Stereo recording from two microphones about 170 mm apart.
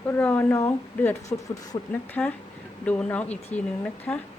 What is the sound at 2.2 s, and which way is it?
Speech, 10° left (ahead or behind).